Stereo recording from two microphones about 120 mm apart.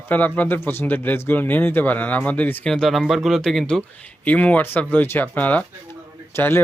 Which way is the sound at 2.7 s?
Centre (ahead or behind).